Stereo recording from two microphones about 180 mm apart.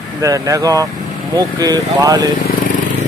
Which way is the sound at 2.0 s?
20° right (ahead or behind).